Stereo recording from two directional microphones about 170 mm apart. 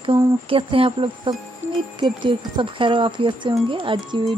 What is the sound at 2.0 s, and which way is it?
Speech, 30° right (ahead or behind).